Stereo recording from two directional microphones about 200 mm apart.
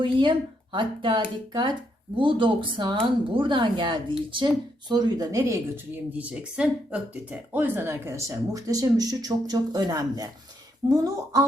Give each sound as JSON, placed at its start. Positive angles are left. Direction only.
{"t": 0.0, "sound": "speech", "side_deg": -25}